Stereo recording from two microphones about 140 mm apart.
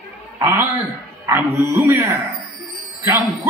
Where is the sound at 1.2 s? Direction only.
20° right (ahead or behind).